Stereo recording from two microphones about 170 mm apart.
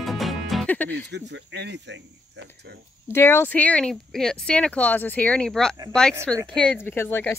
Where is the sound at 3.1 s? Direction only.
15° left (ahead or behind).